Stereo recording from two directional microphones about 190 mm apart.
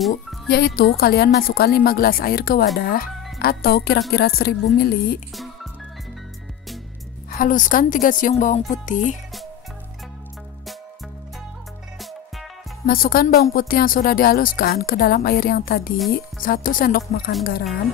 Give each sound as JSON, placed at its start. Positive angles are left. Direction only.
{"t": 0.5, "sound": "a woman's voice", "side_deg": 55}
{"t": 7.2, "sound": "a woman's voice", "side_deg": 45}
{"t": 12.0, "sound": "music", "side_deg": 0}
{"t": 12.8, "sound": "a woman's voice", "side_deg": 50}